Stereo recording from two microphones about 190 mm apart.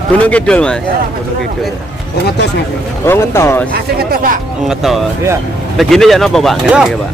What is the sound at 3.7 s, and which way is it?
Speech, 50° right (ahead or behind).